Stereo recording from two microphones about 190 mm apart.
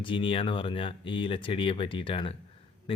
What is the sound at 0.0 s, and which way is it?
Speech, 25° left (ahead or behind).